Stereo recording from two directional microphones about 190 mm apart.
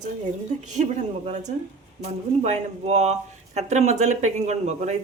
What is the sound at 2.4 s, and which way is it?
Speech, 35° right (ahead or behind).